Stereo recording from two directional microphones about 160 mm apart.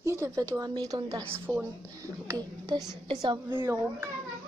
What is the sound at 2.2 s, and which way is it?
Speech, 25° right (ahead or behind).